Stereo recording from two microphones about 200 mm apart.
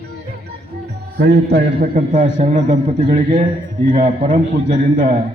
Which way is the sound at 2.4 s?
40° right (ahead or behind).